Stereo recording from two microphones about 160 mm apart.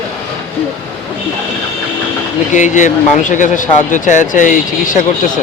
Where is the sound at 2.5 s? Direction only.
50° left (ahead or behind).